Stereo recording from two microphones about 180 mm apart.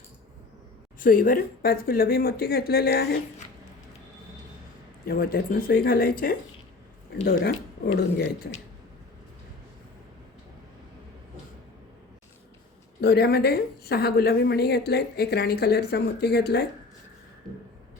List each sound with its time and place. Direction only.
0.9 s a woman's voice: 50° left (ahead or behind)
5.0 s a woman's voice: 55° left (ahead or behind)
13.0 s a woman's voice: 60° left (ahead or behind)